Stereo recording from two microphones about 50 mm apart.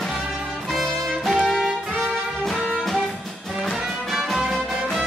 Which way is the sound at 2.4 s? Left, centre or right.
Centre.